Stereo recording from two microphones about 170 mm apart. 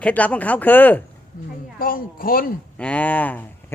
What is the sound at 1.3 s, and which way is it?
A man's voice, 55° left (ahead or behind).